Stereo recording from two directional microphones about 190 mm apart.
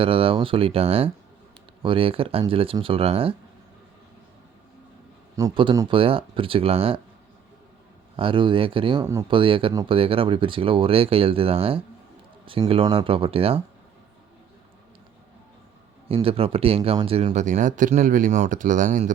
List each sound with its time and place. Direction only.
0.0 s speech: 30° right (ahead or behind)
5.4 s a man's voice: 20° right (ahead or behind)
8.1 s speech: 25° right (ahead or behind)
16.0 s speech: 30° right (ahead or behind)